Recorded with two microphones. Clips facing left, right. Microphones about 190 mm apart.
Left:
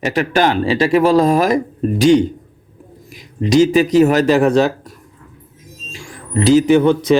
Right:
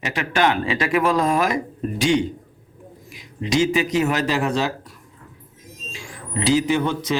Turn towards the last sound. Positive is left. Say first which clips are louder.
# left 10 dB
turn(degrees=55)  # may be behind; listen again after turning